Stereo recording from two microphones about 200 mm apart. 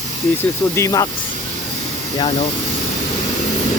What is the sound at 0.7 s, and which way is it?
Speech, 15° left (ahead or behind).